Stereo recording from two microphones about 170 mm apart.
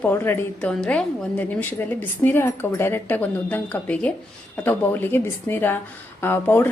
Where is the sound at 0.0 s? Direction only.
10° left (ahead or behind).